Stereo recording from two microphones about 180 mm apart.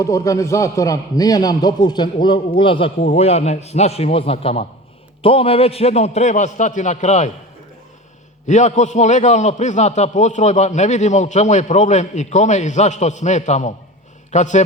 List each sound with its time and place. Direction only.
0.0 s a man's voice: 20° left (ahead or behind); by 7.3 s 40° left (ahead or behind)
8.4 s a man's voice: 40° left (ahead or behind)